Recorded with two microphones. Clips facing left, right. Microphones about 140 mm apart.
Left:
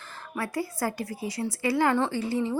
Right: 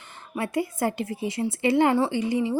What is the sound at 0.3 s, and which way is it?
A woman's voice, 20° right (ahead or behind).